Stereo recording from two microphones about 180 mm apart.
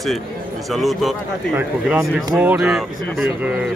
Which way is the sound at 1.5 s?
10° right (ahead or behind).